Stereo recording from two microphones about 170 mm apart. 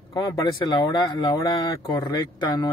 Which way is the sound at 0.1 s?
25° left (ahead or behind).